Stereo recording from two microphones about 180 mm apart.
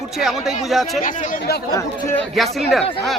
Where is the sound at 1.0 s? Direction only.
45° left (ahead or behind).